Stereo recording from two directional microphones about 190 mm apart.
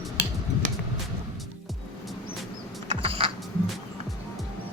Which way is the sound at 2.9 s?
30° right (ahead or behind).